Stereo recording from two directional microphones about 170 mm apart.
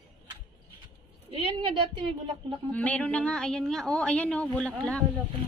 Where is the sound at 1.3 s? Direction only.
35° right (ahead or behind).